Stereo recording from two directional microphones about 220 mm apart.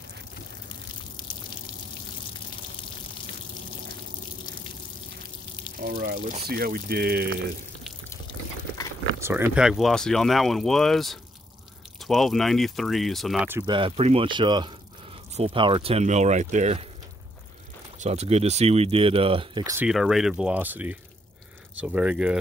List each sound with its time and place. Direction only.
5.8 s speech: 45° right (ahead or behind)
9.2 s speech: 10° right (ahead or behind)
13.7 s speech: 25° right (ahead or behind)
17.9 s speech: 30° right (ahead or behind); by 19.9 s 15° right (ahead or behind)
19.9 s speech: centre (ahead or behind)